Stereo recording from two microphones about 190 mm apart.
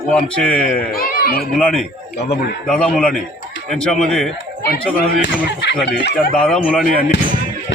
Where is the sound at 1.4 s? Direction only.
5° left (ahead or behind).